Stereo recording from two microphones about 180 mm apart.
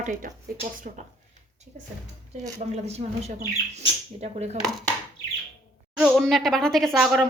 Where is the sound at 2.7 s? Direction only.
35° right (ahead or behind).